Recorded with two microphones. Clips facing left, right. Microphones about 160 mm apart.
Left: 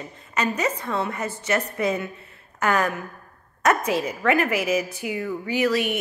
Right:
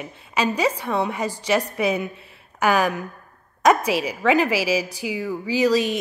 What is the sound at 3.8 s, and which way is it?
A woman's voice, 80° right.